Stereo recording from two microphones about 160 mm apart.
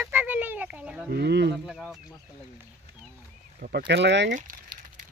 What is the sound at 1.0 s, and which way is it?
Speech, 90° right.